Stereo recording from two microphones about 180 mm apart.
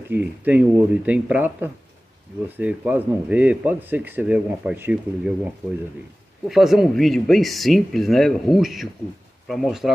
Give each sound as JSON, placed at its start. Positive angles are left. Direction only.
{"t": 0.1, "sound": "speech", "side_deg": -10}